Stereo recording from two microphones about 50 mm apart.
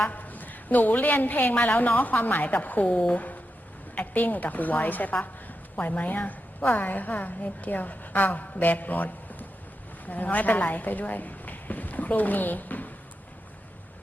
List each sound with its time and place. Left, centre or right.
0.0 s a woman's voice: left